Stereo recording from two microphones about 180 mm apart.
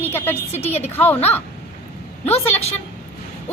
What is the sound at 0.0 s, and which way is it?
Speech, 10° left (ahead or behind).